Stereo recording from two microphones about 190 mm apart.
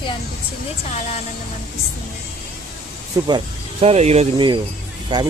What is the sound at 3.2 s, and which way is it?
Speech, 30° right (ahead or behind).